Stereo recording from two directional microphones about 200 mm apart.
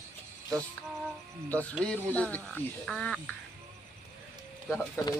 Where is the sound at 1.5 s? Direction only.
5° left (ahead or behind).